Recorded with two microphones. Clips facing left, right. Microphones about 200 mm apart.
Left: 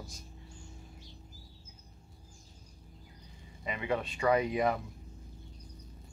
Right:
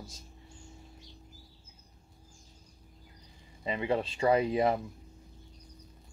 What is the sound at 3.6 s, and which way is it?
Speech, 30° right (ahead or behind).